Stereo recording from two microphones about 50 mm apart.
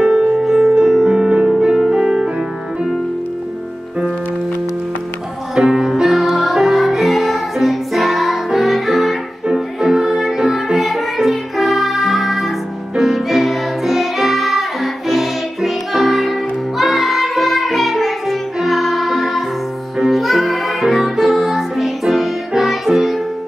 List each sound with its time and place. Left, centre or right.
0.0 s music: centre
0.5 s music: centre
1.1 s music: centre
5.5 s music: centre